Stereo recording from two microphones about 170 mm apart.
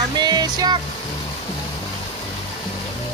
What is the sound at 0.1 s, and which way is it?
Music, 25° right (ahead or behind).